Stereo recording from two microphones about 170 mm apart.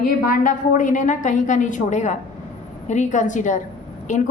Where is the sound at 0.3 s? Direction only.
50° left (ahead or behind).